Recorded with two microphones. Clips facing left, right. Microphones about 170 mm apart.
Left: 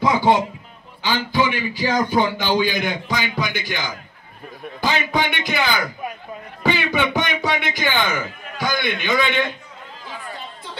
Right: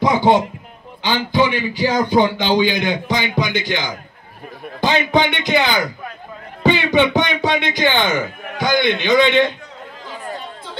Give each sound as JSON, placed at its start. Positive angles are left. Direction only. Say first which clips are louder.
{"t": 0.0, "sound": "a man's voice", "louder": "right 3 dB", "side_deg": -20}